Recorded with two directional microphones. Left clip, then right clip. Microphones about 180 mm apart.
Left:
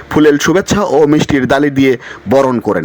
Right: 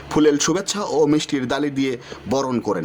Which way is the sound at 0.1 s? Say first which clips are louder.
Left 8 dB; 25° left (ahead or behind).